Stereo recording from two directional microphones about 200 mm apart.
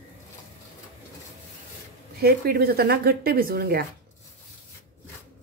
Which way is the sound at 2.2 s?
50° right (ahead or behind).